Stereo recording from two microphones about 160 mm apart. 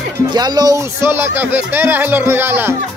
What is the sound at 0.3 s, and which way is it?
Speech, 25° right (ahead or behind).